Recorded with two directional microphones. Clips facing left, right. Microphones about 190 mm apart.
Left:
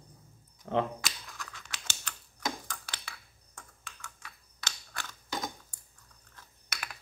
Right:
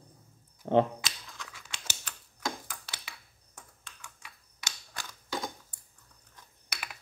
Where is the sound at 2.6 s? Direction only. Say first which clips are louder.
Left 1 dB; 10° right (ahead or behind).